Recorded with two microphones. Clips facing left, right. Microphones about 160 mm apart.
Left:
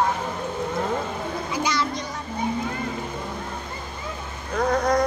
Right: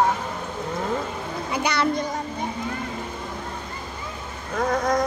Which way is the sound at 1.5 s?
60° right (ahead or behind).